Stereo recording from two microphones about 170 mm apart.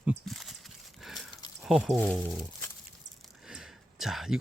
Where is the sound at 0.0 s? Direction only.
Centre (ahead or behind).